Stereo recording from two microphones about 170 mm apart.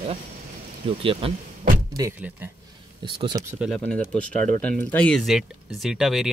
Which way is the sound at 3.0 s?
30° right (ahead or behind).